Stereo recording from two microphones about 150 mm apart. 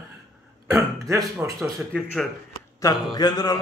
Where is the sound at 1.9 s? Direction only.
5° left (ahead or behind).